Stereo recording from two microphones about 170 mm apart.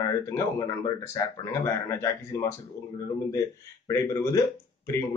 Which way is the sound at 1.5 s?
20° left (ahead or behind).